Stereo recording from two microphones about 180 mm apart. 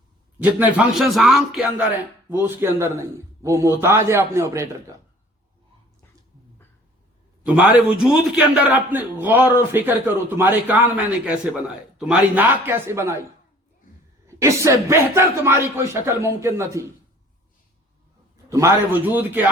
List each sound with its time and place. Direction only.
0.3 s a man's voice: 10° right (ahead or behind)
2.3 s speech: 15° right (ahead or behind)
7.4 s speech: 5° right (ahead or behind)
14.3 s speech: 15° right (ahead or behind)
18.4 s speech: 15° right (ahead or behind)